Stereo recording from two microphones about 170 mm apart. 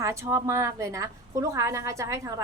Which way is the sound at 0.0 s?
15° right (ahead or behind).